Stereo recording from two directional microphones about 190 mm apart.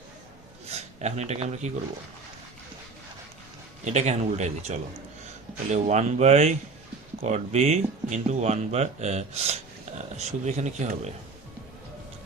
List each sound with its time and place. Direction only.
0.7 s speech: 35° right (ahead or behind)
3.8 s speech: 35° right (ahead or behind)